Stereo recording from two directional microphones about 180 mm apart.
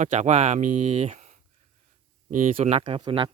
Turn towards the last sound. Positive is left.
turn(degrees=-30)  # may be behind; listen again after turning